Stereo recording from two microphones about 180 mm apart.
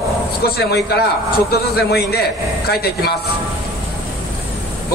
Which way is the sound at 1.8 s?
60° left (ahead or behind).